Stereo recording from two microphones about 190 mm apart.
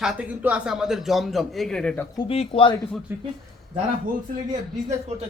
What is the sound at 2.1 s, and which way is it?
Speech, 30° left (ahead or behind).